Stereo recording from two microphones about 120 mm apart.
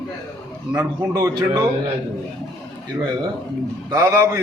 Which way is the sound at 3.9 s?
25° right (ahead or behind).